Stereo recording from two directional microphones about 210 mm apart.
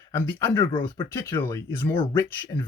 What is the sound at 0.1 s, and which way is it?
Speech, 10° left (ahead or behind).